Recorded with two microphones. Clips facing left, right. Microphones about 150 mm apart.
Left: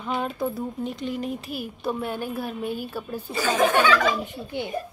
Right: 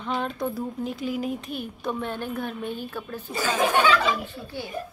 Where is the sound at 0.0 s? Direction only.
5° left (ahead or behind).